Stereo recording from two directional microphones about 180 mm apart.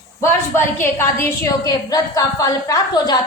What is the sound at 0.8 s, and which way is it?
A woman's voice, 15° left (ahead or behind).